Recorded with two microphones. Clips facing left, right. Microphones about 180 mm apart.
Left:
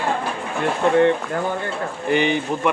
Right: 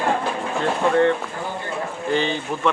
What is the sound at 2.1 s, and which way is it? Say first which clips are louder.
Speech: left 4 dB; 15° left (ahead or behind).